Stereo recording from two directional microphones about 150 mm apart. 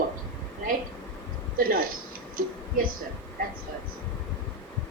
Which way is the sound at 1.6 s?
75° right (ahead or behind).